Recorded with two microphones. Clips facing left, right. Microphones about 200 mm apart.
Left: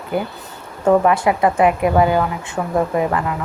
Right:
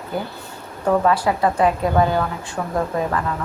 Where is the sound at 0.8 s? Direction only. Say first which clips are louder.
Left 4 dB; 15° left (ahead or behind).